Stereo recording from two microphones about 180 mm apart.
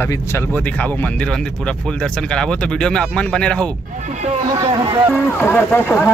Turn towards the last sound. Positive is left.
turn(degrees=10)  # may be behind; listen again after turning